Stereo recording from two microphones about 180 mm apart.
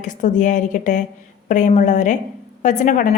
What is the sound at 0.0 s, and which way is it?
A woman's voice, 45° left (ahead or behind).